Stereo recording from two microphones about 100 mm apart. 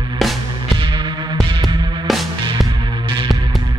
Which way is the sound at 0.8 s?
55° right (ahead or behind).